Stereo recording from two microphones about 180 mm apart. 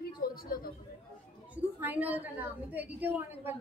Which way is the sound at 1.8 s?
10° right (ahead or behind).